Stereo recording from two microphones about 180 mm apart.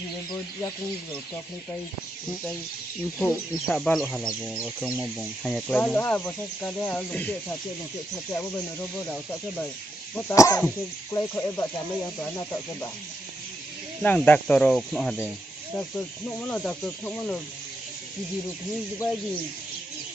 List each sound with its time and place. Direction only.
3.2 s speech: 5° left (ahead or behind)
5.7 s speech: 10° left (ahead or behind)
10.1 s speech: 15° left (ahead or behind)
14.0 s speech: 10° left (ahead or behind)
16.3 s speech: 10° left (ahead or behind)